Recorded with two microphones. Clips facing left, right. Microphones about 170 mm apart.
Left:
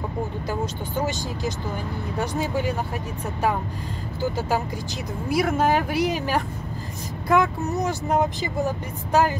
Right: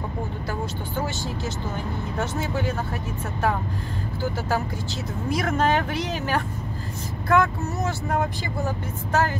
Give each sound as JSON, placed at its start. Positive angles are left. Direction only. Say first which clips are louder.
{"t": 0.5, "sound": "speech", "louder": "left 2 dB", "side_deg": 15}
{"t": 4.2, "sound": "speech", "louder": "left 2 dB", "side_deg": 15}